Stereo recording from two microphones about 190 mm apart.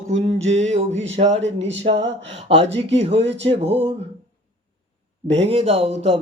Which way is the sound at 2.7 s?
35° right (ahead or behind).